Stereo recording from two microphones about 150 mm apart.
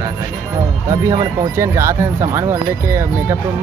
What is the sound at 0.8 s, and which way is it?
Speech, 25° right (ahead or behind).